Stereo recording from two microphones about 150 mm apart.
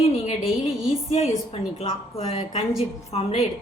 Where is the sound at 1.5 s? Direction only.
40° left (ahead or behind).